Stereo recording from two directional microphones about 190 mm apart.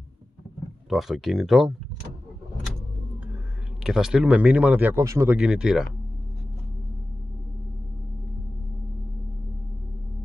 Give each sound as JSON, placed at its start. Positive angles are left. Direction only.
{"t": 0.8, "sound": "speech", "side_deg": 0}
{"t": 3.8, "sound": "speech", "side_deg": -5}